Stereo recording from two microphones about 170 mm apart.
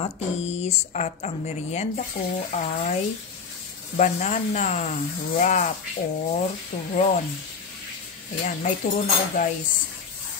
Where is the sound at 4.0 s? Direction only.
45° left (ahead or behind).